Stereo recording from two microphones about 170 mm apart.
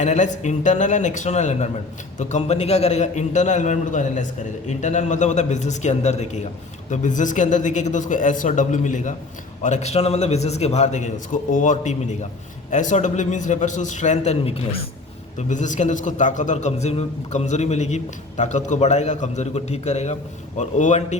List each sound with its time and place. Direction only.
0.0 s a man's voice: 45° left (ahead or behind)
15.4 s a man's voice: 45° left (ahead or behind)